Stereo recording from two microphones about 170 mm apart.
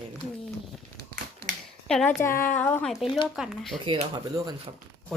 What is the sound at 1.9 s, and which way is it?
Speech, centre (ahead or behind).